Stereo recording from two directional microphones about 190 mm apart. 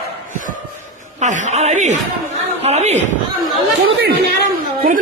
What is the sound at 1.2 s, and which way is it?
A man's voice, 40° right (ahead or behind).